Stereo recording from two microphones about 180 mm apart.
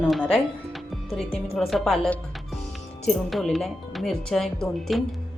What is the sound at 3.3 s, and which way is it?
Speech, centre (ahead or behind).